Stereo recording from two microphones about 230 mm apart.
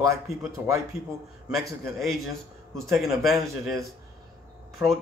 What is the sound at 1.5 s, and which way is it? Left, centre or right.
Speech, centre.